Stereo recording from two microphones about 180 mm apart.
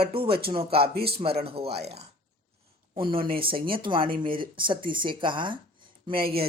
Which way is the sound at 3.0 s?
30° right (ahead or behind).